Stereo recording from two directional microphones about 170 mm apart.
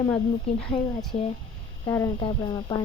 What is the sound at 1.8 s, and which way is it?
Speech, 15° left (ahead or behind).